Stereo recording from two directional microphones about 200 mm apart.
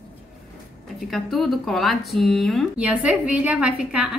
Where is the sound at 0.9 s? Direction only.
Centre (ahead or behind).